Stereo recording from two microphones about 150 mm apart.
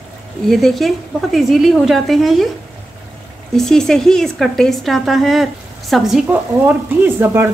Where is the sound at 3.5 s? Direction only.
5° left (ahead or behind).